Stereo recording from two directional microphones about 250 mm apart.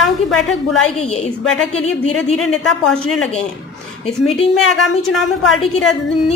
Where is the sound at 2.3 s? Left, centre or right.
Centre.